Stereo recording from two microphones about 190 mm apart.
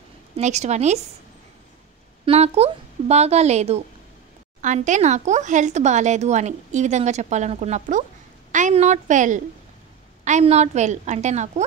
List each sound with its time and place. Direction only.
0.4 s speech: 35° right (ahead or behind)
2.2 s speech: 35° right (ahead or behind)